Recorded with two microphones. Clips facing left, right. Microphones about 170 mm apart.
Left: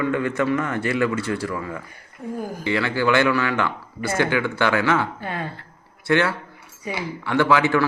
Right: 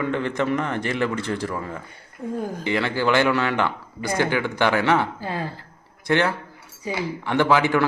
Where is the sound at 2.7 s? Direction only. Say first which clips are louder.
Left 1 dB; 20° right (ahead or behind).